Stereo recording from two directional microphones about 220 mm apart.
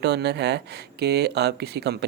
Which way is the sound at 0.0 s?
50° right (ahead or behind).